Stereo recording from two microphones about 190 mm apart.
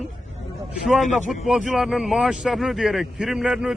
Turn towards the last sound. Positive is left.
turn(degrees=-5)  # may be behind; listen again after turning